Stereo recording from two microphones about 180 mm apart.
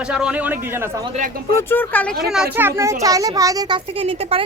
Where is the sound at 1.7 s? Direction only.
10° left (ahead or behind).